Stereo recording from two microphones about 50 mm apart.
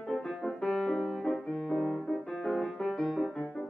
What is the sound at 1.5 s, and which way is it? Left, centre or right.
Music, centre.